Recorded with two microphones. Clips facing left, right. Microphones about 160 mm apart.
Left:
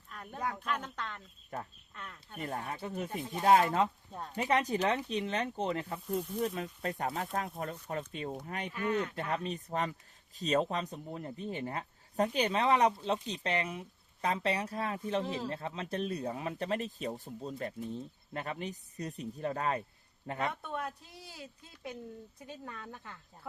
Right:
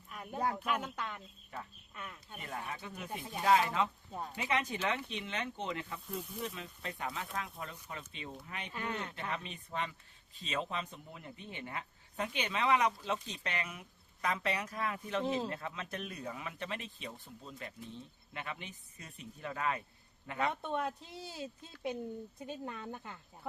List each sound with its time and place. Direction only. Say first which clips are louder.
0.1 s a sound: right 1 dB; 10° right (ahead or behind)
0.5 s speech: right 1 dB; 10° right (ahead or behind)
1.5 s speech: left 5 dB; 45° left (ahead or behind)
2.0 s speech: even; 10° right (ahead or behind)
2.4 s speech: left 5 dB; 40° left (ahead or behind)
4.1 s speech: right 1 dB; 5° right (ahead or behind)
4.4 s speech: left 6 dB; 40° left (ahead or behind)
8.7 s speech: left 7 dB; 25° right (ahead or behind)
9.1 s speech: left 6 dB; 40° left (ahead or behind)
15.2 s speech: right 2 dB; 25° right (ahead or behind)
15.4 s speech: left 3 dB; 30° left (ahead or behind)
20.5 s speech: right 3 dB; 25° right (ahead or behind)